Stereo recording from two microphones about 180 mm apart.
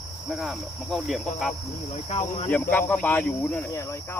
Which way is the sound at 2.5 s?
10° left (ahead or behind).